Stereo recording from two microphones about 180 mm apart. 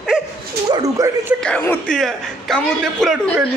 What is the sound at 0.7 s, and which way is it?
Speech, 20° right (ahead or behind).